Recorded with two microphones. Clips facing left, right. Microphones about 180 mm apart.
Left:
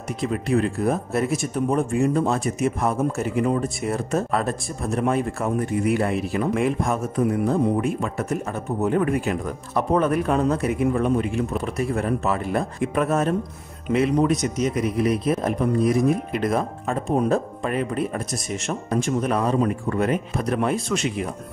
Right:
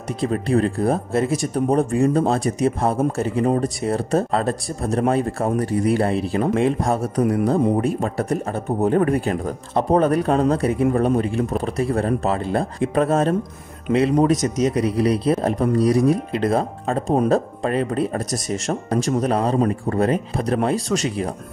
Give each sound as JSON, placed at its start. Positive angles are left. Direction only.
{"t": 0.2, "sound": "speech", "side_deg": -35}